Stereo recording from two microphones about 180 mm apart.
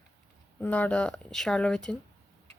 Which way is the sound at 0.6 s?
10° left (ahead or behind).